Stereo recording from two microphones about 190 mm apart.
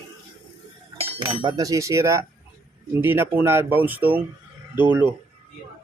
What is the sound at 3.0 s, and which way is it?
Speech, 10° right (ahead or behind).